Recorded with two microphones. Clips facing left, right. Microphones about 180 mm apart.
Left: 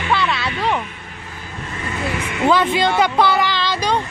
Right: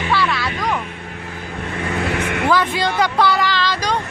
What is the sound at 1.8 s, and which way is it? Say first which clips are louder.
Vehicle: right 3 dB; 65° right (ahead or behind).